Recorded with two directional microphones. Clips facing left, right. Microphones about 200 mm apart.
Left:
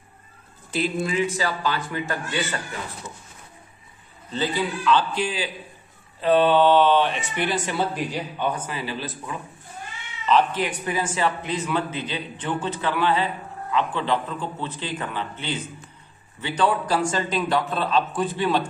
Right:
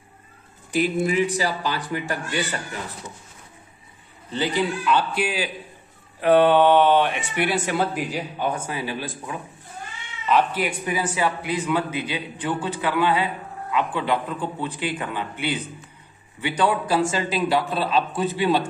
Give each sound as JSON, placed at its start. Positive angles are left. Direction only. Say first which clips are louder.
{"t": 0.7, "sound": "a man's voice", "louder": "right 3 dB", "side_deg": -15}
{"t": 4.4, "sound": "a man's voice", "louder": "right 2 dB", "side_deg": -15}